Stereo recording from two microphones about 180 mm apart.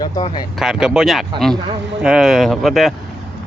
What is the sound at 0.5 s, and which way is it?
Speech, 5° right (ahead or behind).